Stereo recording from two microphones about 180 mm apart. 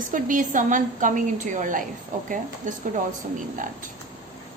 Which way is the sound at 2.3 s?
45° right (ahead or behind).